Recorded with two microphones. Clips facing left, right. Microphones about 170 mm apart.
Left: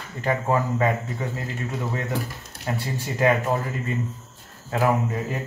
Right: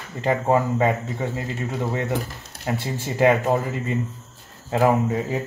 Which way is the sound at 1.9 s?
25° right (ahead or behind).